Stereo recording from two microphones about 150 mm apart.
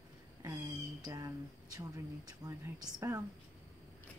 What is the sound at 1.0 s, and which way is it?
Speech, 25° right (ahead or behind).